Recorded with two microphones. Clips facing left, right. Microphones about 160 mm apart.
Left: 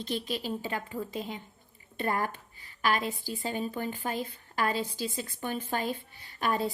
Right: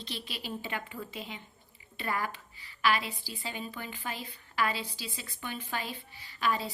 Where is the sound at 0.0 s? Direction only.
45° left (ahead or behind).